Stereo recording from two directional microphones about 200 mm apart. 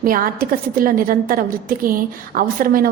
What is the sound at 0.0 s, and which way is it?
A woman's voice, 45° right (ahead or behind).